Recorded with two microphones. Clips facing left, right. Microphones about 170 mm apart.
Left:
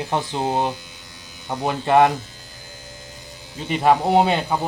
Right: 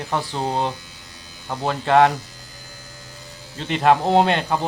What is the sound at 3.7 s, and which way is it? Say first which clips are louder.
Speech: even; 10° left (ahead or behind).